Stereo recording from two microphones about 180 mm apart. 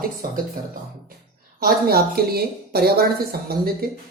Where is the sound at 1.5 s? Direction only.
55° right (ahead or behind).